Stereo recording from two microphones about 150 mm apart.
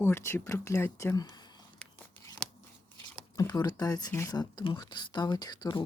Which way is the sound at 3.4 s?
25° left (ahead or behind).